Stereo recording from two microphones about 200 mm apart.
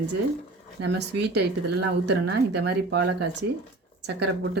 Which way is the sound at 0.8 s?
60° right (ahead or behind).